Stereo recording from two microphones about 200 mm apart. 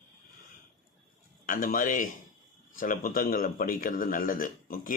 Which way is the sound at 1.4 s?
45° left (ahead or behind).